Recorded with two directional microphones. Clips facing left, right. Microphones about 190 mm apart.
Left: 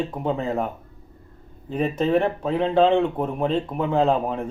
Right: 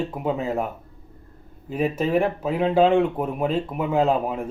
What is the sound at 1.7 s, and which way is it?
Speech, 5° right (ahead or behind).